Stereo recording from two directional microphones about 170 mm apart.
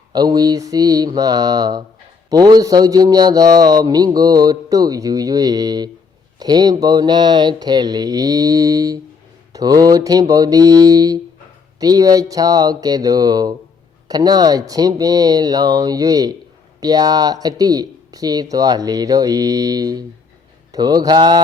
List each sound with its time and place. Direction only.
0.1 s a man's voice: 25° right (ahead or behind)